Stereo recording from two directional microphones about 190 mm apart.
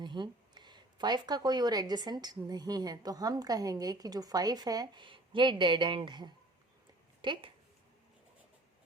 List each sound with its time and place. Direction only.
0.0 s speech: 25° right (ahead or behind)